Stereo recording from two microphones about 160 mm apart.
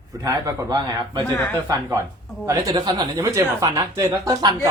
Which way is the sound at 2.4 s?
20° right (ahead or behind).